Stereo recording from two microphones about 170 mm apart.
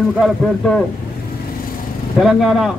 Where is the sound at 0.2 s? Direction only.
5° left (ahead or behind).